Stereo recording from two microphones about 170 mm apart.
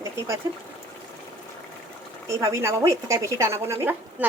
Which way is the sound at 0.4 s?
20° right (ahead or behind).